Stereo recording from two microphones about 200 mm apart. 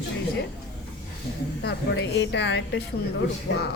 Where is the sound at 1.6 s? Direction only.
60° left (ahead or behind).